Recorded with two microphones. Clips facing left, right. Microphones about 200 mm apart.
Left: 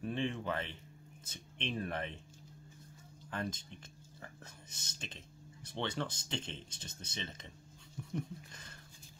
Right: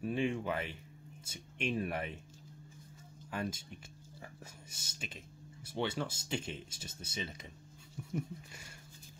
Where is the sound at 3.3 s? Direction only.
10° right (ahead or behind).